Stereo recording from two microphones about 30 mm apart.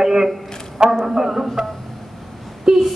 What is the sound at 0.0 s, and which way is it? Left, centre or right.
A man's voice, centre.